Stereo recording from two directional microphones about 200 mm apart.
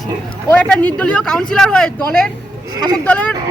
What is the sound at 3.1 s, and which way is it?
Speech, 5° left (ahead or behind).